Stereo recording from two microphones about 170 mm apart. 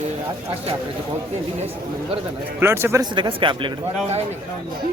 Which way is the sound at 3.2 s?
30° right (ahead or behind).